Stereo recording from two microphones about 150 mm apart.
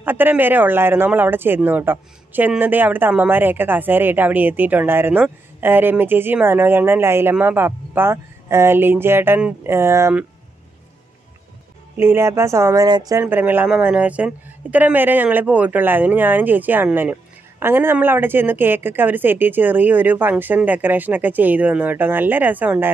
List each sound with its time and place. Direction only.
0.0 s speech: 15° right (ahead or behind)
12.0 s speech: 15° right (ahead or behind)
13.2 s speech: 10° right (ahead or behind)